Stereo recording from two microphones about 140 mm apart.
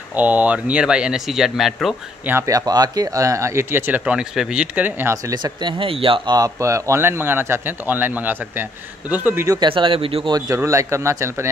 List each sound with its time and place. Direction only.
0.1 s speech: 10° right (ahead or behind)
2.2 s speech: 20° right (ahead or behind)
5.3 s speech: 35° right (ahead or behind); by 9.6 s 15° right (ahead or behind)
9.6 s speech: 35° right (ahead or behind)
10.3 s speech: 20° right (ahead or behind)